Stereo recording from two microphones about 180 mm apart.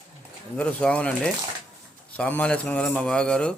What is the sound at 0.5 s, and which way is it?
A man's voice, 5° left (ahead or behind).